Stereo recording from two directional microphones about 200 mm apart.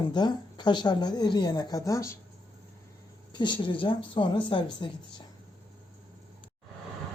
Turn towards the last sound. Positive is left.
turn(degrees=25)  # may be behind; listen again after turning